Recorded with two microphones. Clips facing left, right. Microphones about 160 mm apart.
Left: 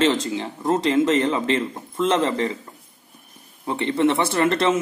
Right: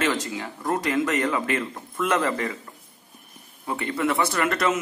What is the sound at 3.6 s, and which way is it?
A man's voice, 25° left (ahead or behind).